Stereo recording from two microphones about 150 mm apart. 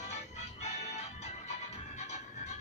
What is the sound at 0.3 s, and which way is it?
Music, 50° left (ahead or behind).